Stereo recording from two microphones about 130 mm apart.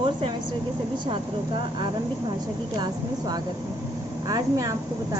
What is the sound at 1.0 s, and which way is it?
Speech, 40° right (ahead or behind).